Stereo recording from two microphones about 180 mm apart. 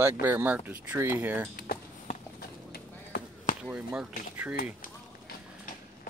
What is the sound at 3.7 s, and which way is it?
Speech, 10° right (ahead or behind).